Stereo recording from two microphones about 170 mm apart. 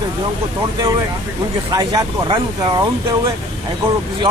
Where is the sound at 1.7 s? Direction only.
25° right (ahead or behind).